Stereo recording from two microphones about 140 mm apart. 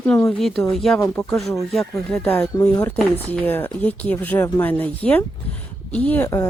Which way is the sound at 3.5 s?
10° left (ahead or behind).